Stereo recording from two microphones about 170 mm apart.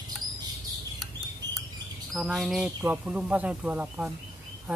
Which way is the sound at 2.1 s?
Centre (ahead or behind).